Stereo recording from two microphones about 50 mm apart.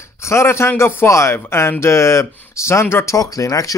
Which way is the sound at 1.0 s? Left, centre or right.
Left.